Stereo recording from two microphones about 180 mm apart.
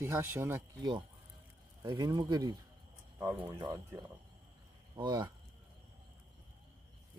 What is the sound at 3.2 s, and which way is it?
Speech, 10° right (ahead or behind).